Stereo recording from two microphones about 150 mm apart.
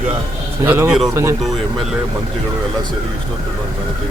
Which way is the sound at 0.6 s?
15° right (ahead or behind).